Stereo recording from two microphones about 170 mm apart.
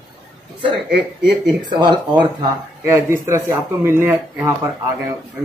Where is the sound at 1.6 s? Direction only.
25° right (ahead or behind).